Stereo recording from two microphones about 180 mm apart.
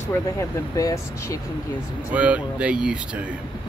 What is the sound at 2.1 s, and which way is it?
Speech, 5° right (ahead or behind).